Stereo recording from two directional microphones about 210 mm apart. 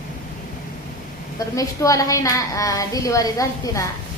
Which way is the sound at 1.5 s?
15° left (ahead or behind).